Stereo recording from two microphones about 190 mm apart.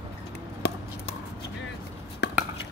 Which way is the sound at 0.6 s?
60° left (ahead or behind).